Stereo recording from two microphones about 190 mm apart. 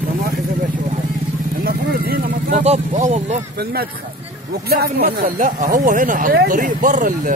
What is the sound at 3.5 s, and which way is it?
Speech, 55° right (ahead or behind).